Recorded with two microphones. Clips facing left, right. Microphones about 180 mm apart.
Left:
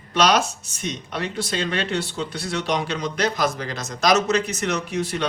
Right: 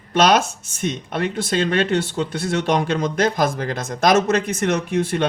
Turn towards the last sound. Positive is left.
turn(degrees=-55)  # may be behind; listen again after turning